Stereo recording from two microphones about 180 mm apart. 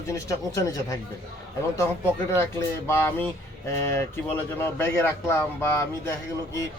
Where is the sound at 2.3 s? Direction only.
15° left (ahead or behind).